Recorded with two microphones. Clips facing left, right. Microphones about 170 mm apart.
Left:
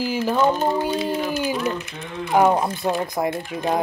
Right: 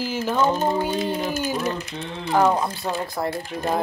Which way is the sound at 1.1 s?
45° right (ahead or behind).